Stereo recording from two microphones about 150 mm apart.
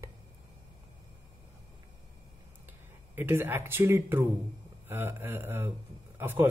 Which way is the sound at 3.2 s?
15° right (ahead or behind).